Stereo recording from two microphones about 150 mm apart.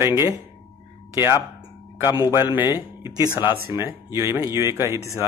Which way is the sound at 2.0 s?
25° left (ahead or behind).